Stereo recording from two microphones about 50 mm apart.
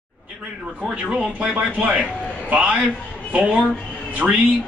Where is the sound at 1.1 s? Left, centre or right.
Centre.